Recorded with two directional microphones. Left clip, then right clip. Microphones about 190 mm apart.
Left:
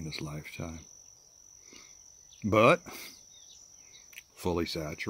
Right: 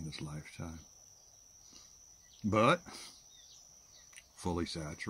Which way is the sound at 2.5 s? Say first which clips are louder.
Left 6 dB; 15° left (ahead or behind).